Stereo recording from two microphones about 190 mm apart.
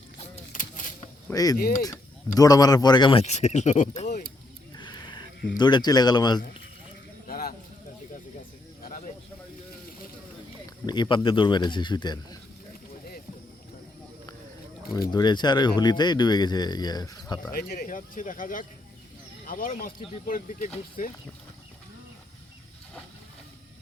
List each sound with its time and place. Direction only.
0.5 s keys jangling: 45° left (ahead or behind)
1.3 s speech: 20° left (ahead or behind); by 4.1 s 40° left (ahead or behind)
4.8 s a sound: 25° left (ahead or behind)
5.5 s speech: 20° left (ahead or behind)
7.3 s a sound: 50° left (ahead or behind)
8.8 s a sound: 45° left (ahead or behind)
10.8 s speech: 25° left (ahead or behind)
15.1 s speech: 25° left (ahead or behind)
17.5 s speech: 50° left (ahead or behind)